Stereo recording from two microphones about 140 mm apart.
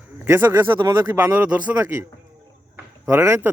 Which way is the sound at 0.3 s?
15° right (ahead or behind).